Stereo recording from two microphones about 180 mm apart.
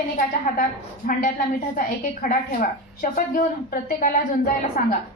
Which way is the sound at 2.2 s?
50° left (ahead or behind).